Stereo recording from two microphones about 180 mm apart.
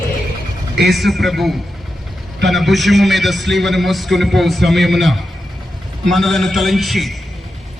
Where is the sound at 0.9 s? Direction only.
Centre (ahead or behind).